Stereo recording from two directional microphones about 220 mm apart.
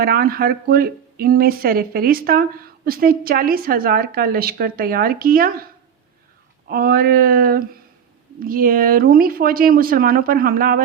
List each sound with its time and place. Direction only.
0.0 s speech: 40° right (ahead or behind)
6.7 s speech: 40° right (ahead or behind)